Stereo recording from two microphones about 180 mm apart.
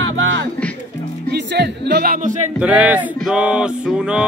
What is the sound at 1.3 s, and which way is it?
Music, 65° right (ahead or behind).